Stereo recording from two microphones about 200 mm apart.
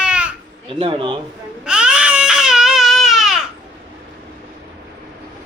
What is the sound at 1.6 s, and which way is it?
Baby cry, 5° right (ahead or behind).